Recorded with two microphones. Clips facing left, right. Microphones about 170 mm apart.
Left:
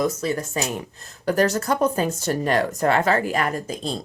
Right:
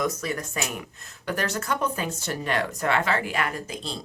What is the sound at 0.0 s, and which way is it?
Speech, 30° left (ahead or behind).